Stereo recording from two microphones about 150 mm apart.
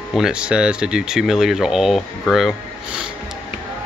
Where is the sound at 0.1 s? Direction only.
5° right (ahead or behind).